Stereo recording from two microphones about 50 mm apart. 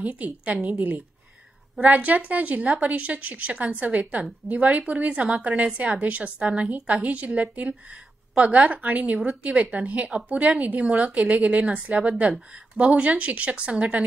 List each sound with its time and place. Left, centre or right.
0.0 s a woman's voice: right
0.7 s a woman's voice: right
12.0 s a woman's voice: right